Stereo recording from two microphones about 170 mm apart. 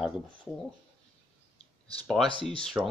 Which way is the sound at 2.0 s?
Centre (ahead or behind).